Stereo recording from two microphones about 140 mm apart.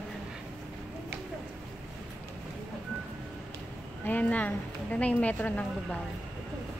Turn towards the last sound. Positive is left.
turn(degrees=10)  # may be behind; listen again after turning